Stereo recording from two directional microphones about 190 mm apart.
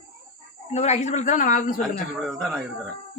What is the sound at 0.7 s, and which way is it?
A man's voice, 35° left (ahead or behind).